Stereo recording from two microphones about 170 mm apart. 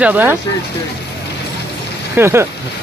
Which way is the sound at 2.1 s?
15° right (ahead or behind).